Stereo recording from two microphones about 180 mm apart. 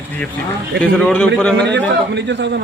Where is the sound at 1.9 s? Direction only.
75° right (ahead or behind).